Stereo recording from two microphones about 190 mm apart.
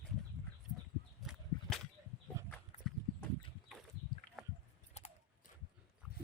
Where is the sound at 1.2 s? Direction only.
Centre (ahead or behind).